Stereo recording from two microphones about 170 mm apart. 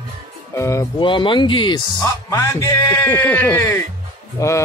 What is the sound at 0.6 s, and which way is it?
Speech, 15° left (ahead or behind).